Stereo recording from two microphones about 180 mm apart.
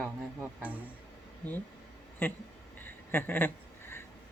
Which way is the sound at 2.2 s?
10° left (ahead or behind).